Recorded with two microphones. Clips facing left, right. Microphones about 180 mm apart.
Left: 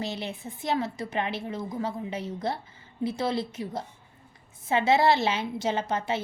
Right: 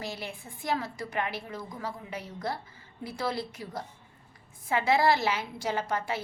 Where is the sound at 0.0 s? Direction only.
20° left (ahead or behind).